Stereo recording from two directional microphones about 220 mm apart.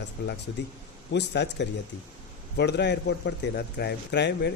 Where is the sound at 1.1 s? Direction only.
50° left (ahead or behind).